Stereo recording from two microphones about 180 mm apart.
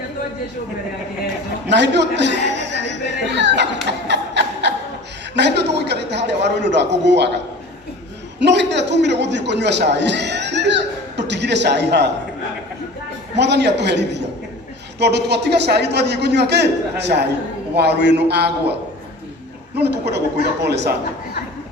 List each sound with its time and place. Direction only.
1.7 s a man's voice: 75° right (ahead or behind)
4.1 s snicker: 75° right (ahead or behind)
5.3 s a man's voice: 70° right (ahead or behind)
8.4 s a man's voice: 75° right (ahead or behind)
13.3 s a man's voice: 70° right (ahead or behind)